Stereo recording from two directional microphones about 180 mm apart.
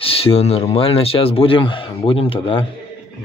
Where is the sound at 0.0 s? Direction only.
30° left (ahead or behind).